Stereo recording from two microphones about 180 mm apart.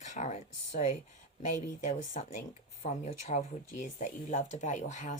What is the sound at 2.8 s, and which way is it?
A woman's voice, 40° left (ahead or behind).